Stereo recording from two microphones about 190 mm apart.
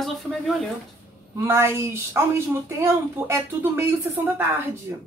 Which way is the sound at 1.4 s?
15° right (ahead or behind).